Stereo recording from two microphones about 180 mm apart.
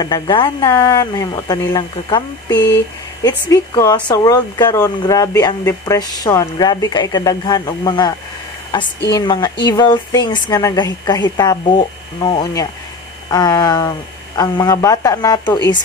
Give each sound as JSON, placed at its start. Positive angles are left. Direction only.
{"t": 0.0, "sound": "speech", "side_deg": 25}
{"t": 9.1, "sound": "speech", "side_deg": 25}